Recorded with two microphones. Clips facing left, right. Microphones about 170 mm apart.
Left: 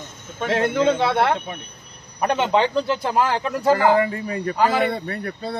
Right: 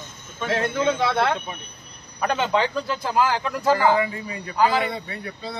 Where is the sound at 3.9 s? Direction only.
50° left (ahead or behind).